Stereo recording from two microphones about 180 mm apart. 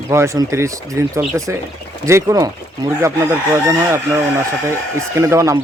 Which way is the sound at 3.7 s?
15° right (ahead or behind).